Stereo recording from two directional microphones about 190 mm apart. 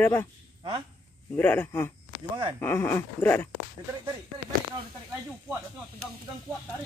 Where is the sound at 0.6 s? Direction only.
25° right (ahead or behind).